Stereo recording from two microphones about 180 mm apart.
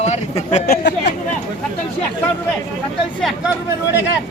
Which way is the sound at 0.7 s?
70° left (ahead or behind).